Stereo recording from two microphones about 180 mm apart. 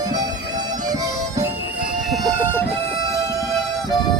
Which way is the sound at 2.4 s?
10° left (ahead or behind).